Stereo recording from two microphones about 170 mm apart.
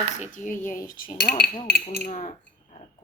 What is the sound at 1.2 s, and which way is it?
Speech, 65° left (ahead or behind).